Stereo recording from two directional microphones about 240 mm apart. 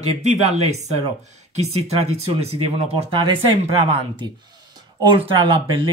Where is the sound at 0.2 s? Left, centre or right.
Right.